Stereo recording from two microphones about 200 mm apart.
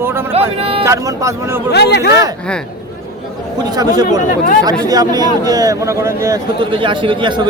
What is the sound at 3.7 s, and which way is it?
A man's voice, 20° right (ahead or behind).